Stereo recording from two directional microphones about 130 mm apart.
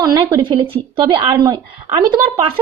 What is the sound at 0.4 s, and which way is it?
Speech, 40° right (ahead or behind).